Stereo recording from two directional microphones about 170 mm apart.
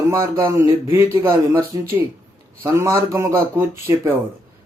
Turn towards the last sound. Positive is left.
turn(degrees=-15)  # may be behind; listen again after turning